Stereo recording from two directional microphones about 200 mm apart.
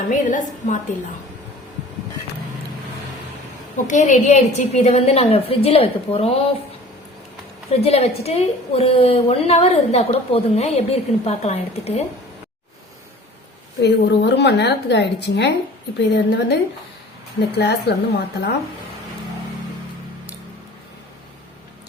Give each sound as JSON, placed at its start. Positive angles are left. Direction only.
{"t": 0.1, "sound": "a woman's voice", "side_deg": 40}
{"t": 3.8, "sound": "a woman's voice", "side_deg": 40}
{"t": 7.7, "sound": "a woman's voice", "side_deg": 30}
{"t": 13.8, "sound": "a woman's voice", "side_deg": 60}